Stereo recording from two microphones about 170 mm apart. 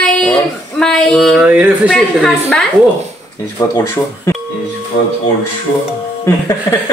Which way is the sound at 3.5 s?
20° left (ahead or behind).